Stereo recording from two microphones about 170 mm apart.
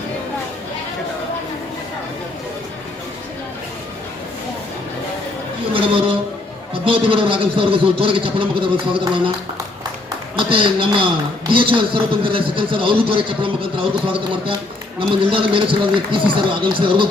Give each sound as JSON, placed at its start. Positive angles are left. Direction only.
{"t": 5.7, "sound": "a sound", "side_deg": -30}
{"t": 6.8, "sound": "a man's voice", "side_deg": -30}
{"t": 10.3, "sound": "a man's voice", "side_deg": -30}